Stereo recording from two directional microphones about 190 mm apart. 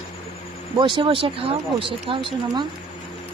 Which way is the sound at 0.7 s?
25° right (ahead or behind).